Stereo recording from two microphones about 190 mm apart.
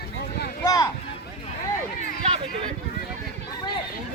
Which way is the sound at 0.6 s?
20° left (ahead or behind).